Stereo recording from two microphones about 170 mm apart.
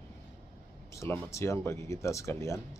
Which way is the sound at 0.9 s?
15° left (ahead or behind).